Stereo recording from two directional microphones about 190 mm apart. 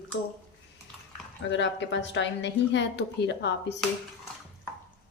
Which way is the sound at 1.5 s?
70° left (ahead or behind).